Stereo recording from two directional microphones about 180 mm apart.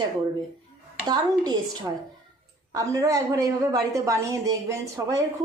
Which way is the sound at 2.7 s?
20° right (ahead or behind).